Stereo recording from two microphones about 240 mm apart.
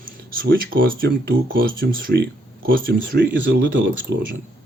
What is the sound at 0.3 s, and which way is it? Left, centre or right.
Speech, right.